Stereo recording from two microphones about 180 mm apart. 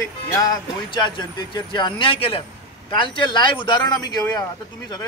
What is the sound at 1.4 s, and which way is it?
A man's voice, 25° left (ahead or behind).